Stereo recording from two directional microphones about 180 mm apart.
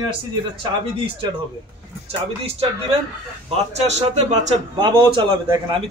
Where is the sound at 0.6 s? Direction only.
30° right (ahead or behind).